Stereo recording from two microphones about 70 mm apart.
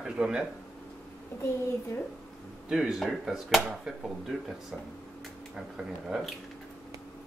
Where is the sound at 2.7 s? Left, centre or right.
Centre.